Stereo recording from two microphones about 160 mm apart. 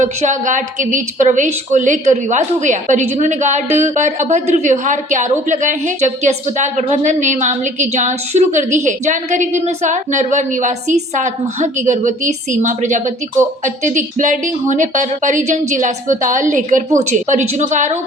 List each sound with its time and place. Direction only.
0.0 s a woman's voice: 50° right (ahead or behind)